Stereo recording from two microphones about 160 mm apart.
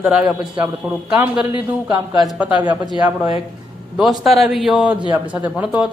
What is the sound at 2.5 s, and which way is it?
Speech, 25° right (ahead or behind).